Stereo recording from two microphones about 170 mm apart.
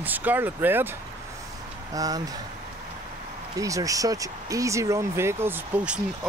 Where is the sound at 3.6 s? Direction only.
20° right (ahead or behind).